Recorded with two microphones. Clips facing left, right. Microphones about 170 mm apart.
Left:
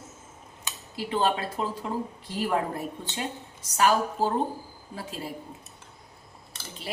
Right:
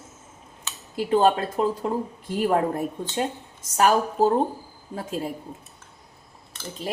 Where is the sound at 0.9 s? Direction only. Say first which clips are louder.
Right 7 dB; 45° right (ahead or behind).